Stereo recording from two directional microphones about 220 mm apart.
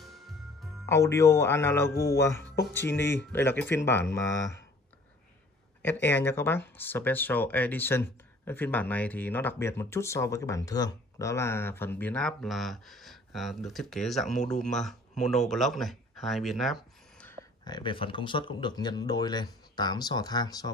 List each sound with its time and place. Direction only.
0.8 s speech: 15° left (ahead or behind)
5.8 s speech: 10° left (ahead or behind)
17.6 s speech: 20° left (ahead or behind)